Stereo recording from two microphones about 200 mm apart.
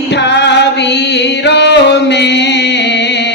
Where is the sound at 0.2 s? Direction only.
60° left (ahead or behind).